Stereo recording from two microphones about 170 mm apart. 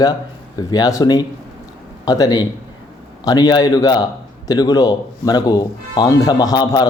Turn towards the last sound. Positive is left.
turn(degrees=25)  # may be behind; listen again after turning